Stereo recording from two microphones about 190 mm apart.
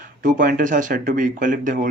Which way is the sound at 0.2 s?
45° right (ahead or behind).